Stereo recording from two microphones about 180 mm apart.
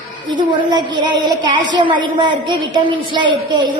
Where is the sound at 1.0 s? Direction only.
25° right (ahead or behind).